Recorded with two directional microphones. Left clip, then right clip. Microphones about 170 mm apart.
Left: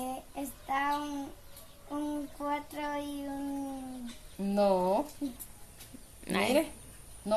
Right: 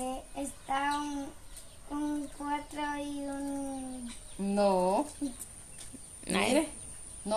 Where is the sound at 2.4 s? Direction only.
15° right (ahead or behind).